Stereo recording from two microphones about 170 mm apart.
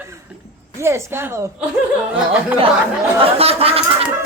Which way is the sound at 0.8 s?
15° right (ahead or behind).